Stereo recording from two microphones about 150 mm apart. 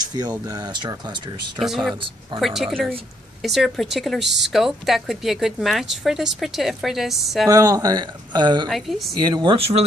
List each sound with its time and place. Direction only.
0.5 s speech: 25° right (ahead or behind)
1.6 s a woman's voice: centre (ahead or behind)
7.4 s speech: 25° right (ahead or behind)
8.6 s a woman's voice: centre (ahead or behind)
9.2 s speech: 30° right (ahead or behind)